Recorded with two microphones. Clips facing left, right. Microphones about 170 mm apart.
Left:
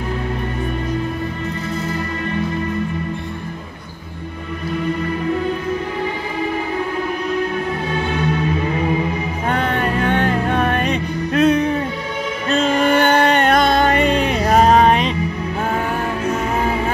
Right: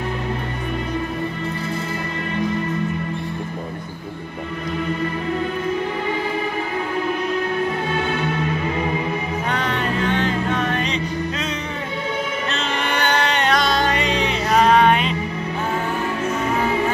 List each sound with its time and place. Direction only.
9.5 s music: 55° left (ahead or behind)
12.4 s music: 50° left (ahead or behind)